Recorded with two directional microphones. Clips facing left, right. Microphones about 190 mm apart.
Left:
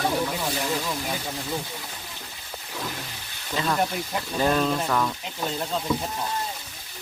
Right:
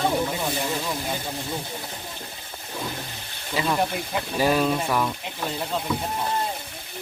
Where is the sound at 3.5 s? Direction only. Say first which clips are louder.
Right 1 dB; 10° right (ahead or behind).